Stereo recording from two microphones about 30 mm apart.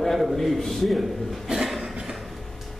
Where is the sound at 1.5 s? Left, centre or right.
Centre.